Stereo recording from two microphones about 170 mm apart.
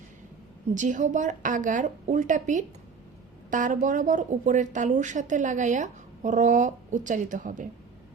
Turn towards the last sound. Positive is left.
turn(degrees=-50)  # may be behind; listen again after turning